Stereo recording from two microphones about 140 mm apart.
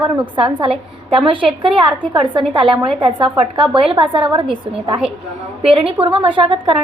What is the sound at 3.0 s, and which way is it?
A woman's voice, 35° right (ahead or behind).